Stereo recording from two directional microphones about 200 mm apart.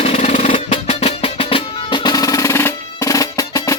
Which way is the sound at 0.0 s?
30° left (ahead or behind).